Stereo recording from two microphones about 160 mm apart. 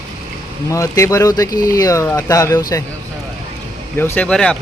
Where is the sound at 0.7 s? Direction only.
20° left (ahead or behind).